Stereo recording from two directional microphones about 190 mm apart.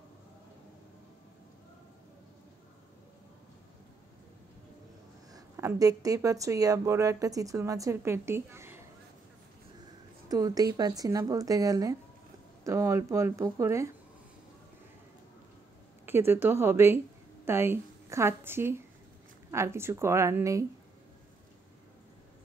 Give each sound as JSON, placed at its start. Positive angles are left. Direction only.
{"t": 5.3, "sound": "speech", "side_deg": -20}
{"t": 10.2, "sound": "speech", "side_deg": -20}
{"t": 16.1, "sound": "speech", "side_deg": -10}